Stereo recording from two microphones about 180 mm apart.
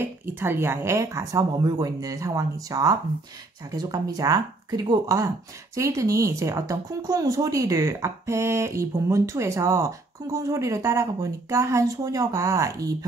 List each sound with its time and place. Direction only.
0.0 s speech: 10° right (ahead or behind)